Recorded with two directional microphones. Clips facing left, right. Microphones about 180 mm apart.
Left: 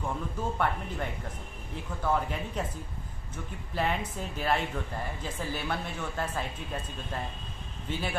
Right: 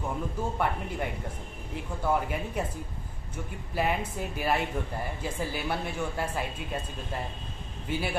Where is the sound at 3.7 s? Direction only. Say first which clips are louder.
Right 2 dB; 10° right (ahead or behind).